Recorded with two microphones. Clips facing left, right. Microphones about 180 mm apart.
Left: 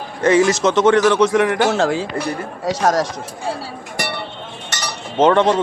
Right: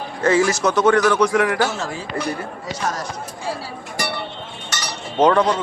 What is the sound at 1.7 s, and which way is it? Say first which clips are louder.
Speech: left 8 dB; 90° left.